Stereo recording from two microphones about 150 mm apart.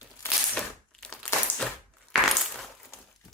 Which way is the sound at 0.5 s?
5° left (ahead or behind).